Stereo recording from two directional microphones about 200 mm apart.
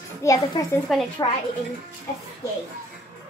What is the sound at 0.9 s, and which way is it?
Speech, centre (ahead or behind).